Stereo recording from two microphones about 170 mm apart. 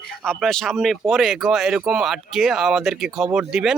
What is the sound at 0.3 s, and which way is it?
Speech, 5° left (ahead or behind).